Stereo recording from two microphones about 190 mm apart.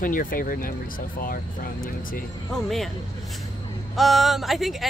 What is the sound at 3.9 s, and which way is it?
Speech, centre (ahead or behind).